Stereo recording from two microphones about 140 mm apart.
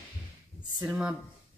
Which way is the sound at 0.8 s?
Centre (ahead or behind).